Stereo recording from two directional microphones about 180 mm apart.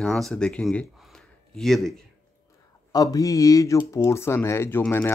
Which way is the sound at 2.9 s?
20° left (ahead or behind).